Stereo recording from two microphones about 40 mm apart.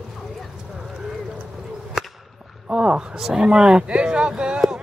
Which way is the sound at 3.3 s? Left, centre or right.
Right.